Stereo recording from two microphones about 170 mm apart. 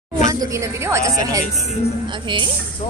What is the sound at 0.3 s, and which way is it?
A woman's voice, 20° right (ahead or behind).